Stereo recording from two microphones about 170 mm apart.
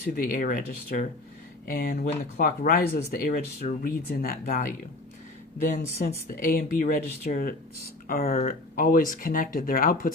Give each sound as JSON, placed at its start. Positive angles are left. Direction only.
{"t": 0.2, "sound": "speech", "side_deg": 55}
{"t": 5.7, "sound": "speech", "side_deg": 50}